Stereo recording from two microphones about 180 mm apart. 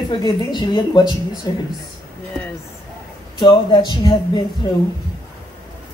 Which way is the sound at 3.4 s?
25° left (ahead or behind).